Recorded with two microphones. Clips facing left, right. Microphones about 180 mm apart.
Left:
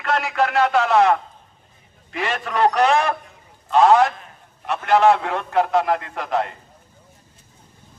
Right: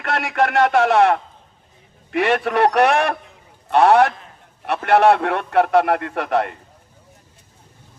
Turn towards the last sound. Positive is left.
turn(degrees=-65)  # may be behind; listen again after turning